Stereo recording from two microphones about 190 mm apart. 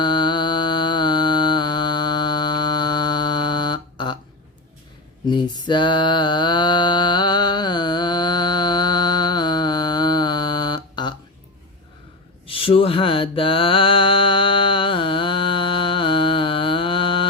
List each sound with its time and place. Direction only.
0.0 s music: 25° left (ahead or behind)
5.3 s mantra: 25° left (ahead or behind)
12.5 s mantra: 30° left (ahead or behind)